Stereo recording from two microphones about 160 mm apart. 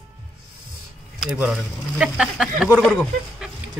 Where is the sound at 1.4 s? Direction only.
5° right (ahead or behind).